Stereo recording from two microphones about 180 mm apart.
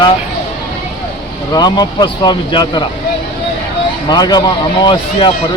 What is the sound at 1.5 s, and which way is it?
Speech, 20° left (ahead or behind).